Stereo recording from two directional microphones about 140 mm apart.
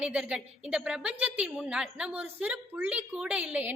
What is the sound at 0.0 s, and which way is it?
A woman's voice, 5° right (ahead or behind).